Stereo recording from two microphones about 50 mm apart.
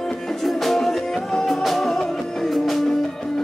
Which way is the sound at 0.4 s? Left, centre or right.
Centre.